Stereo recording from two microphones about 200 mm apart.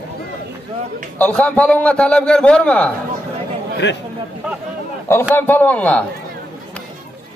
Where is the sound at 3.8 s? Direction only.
60° left (ahead or behind).